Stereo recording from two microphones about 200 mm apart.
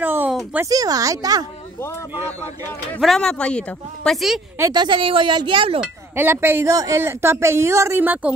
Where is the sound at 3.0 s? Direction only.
Centre (ahead or behind).